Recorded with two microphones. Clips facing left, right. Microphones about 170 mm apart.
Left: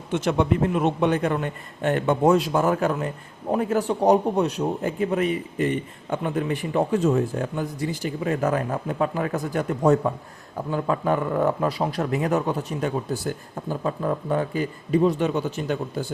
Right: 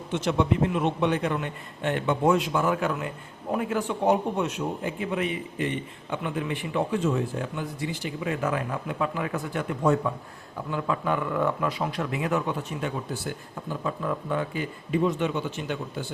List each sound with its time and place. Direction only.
0.1 s a man's voice: 50° left (ahead or behind)